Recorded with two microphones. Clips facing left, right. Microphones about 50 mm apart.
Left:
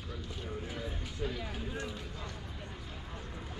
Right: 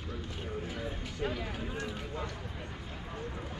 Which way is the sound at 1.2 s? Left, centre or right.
Right.